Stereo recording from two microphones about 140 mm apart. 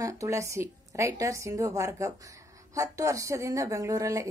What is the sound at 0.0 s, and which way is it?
A woman's voice, 20° right (ahead or behind).